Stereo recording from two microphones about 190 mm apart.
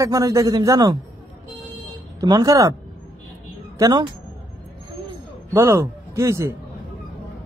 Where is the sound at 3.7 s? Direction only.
20° right (ahead or behind).